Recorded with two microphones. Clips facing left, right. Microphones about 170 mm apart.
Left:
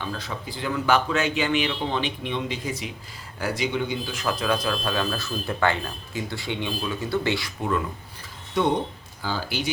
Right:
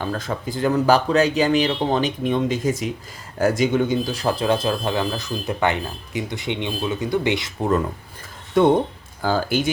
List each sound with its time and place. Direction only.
0.0 s a man's voice: 45° right (ahead or behind); by 7.5 s 20° right (ahead or behind)
8.6 s speech: 50° right (ahead or behind)